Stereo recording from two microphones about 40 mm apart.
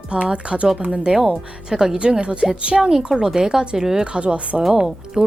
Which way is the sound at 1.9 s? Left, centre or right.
Right.